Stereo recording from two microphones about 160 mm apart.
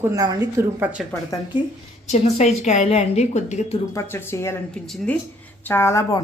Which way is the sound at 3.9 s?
15° left (ahead or behind).